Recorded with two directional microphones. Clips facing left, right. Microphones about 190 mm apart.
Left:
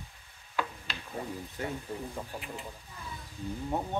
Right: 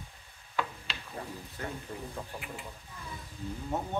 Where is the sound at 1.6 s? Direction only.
25° left (ahead or behind).